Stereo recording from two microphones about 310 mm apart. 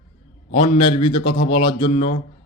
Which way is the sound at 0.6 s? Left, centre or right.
Centre.